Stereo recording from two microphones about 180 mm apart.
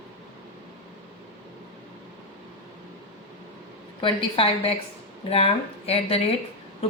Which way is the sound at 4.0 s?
30° left (ahead or behind).